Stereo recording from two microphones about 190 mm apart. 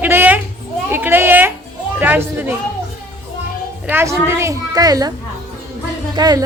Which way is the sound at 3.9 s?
15° right (ahead or behind).